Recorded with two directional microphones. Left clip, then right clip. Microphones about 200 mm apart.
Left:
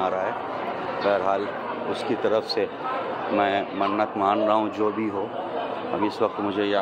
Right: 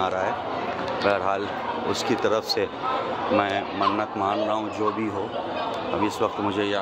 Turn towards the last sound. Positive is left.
turn(degrees=10)  # may be behind; listen again after turning